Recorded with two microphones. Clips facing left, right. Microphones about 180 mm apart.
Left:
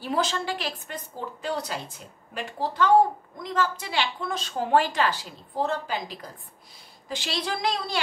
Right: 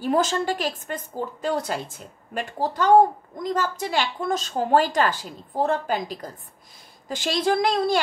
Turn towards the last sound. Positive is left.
turn(degrees=-50)  # may be behind; listen again after turning